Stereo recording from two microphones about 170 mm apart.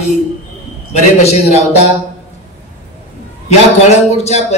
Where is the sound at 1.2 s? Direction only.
40° left (ahead or behind).